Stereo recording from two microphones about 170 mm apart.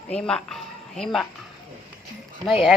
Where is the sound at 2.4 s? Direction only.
5° right (ahead or behind).